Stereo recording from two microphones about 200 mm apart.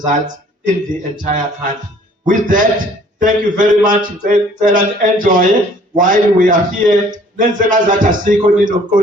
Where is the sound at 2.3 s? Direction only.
40° right (ahead or behind).